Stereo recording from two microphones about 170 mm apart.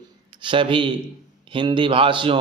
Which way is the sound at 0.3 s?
30° right (ahead or behind).